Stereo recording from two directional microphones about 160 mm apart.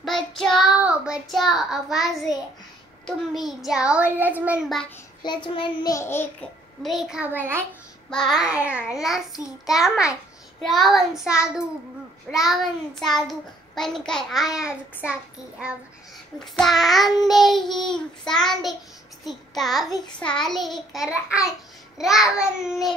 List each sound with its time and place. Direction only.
0.4 s child singing: centre (ahead or behind)
3.1 s a child's voice: centre (ahead or behind)
5.2 s child singing: 30° left (ahead or behind)
6.8 s a child's voice: centre (ahead or behind)
8.1 s a child's voice: centre (ahead or behind)
16.3 s a child's voice: centre (ahead or behind)